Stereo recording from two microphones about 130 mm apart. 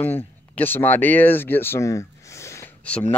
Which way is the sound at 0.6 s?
15° left (ahead or behind).